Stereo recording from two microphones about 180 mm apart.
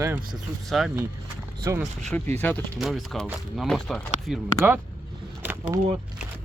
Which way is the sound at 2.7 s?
Centre (ahead or behind).